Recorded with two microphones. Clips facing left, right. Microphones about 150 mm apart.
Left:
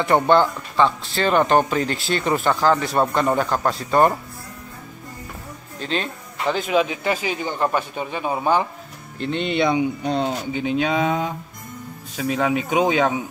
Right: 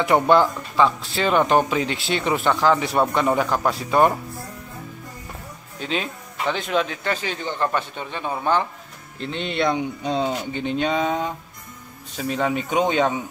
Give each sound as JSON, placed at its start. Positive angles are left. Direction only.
{"t": 0.1, "sound": "speech", "side_deg": 0}
{"t": 5.8, "sound": "speech", "side_deg": 0}
{"t": 9.2, "sound": "speech", "side_deg": 0}